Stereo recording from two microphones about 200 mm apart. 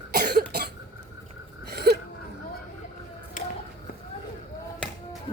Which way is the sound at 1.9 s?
50° right (ahead or behind).